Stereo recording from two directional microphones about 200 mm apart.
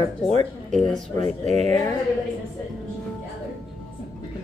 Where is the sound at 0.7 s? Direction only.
Centre (ahead or behind).